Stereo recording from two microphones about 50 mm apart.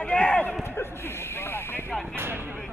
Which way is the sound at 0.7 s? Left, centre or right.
Left.